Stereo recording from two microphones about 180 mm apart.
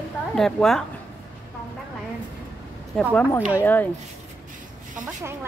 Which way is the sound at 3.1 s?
10° left (ahead or behind).